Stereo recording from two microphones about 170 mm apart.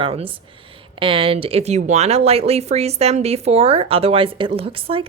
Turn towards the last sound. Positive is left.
turn(degrees=-35)  # may be behind; listen again after turning